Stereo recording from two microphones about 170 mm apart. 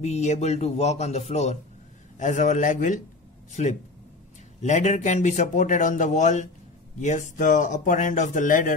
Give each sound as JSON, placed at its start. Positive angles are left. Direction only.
{"t": 0.0, "sound": "speech", "side_deg": 40}
{"t": 4.6, "sound": "speech", "side_deg": 45}